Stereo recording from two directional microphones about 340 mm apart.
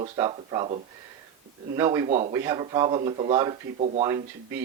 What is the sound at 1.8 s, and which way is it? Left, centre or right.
Speech, centre.